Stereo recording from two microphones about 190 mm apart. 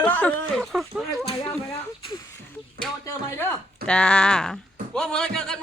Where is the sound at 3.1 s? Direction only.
15° left (ahead or behind).